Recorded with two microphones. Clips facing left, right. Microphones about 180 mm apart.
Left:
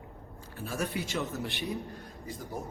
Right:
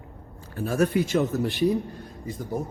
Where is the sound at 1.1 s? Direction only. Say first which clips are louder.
Right 10 dB; 40° right (ahead or behind).